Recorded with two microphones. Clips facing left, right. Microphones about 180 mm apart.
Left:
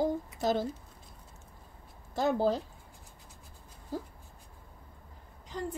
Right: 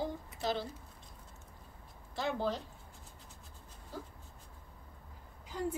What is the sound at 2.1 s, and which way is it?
Speech, 40° left (ahead or behind).